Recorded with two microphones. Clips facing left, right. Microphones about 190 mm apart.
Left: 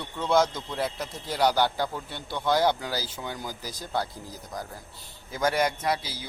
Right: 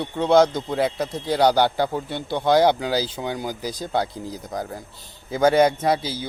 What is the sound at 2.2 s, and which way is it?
Speech, 30° right (ahead or behind).